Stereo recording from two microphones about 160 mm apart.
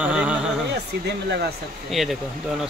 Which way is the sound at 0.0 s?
10° right (ahead or behind).